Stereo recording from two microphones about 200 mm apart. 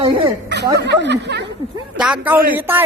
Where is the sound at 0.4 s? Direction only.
55° right (ahead or behind).